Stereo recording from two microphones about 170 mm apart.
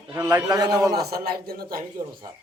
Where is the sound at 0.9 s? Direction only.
65° right (ahead or behind).